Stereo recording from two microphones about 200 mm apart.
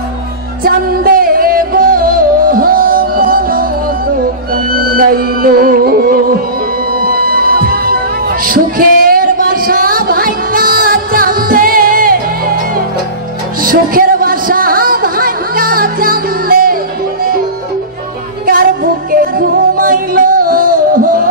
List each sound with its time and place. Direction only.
0.7 s music: 45° right (ahead or behind)
4.9 s music: 45° right (ahead or behind)
7.2 s music: 50° right (ahead or behind)
8.5 s a sound: 45° right (ahead or behind)
13.6 s music: 45° right (ahead or behind)
19.3 s music: 45° right (ahead or behind)